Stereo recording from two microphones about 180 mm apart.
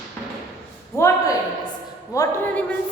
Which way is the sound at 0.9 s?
15° left (ahead or behind).